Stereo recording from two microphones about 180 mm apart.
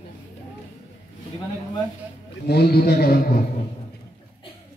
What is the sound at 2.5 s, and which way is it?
Speech, 60° left (ahead or behind).